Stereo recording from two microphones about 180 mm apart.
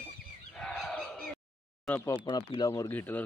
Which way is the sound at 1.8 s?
10° left (ahead or behind).